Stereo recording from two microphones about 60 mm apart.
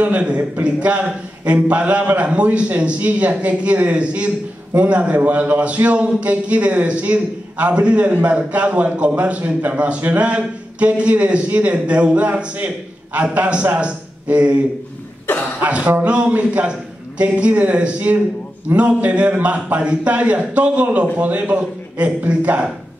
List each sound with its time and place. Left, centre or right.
0.0 s a man's voice: right
15.6 s a man's voice: right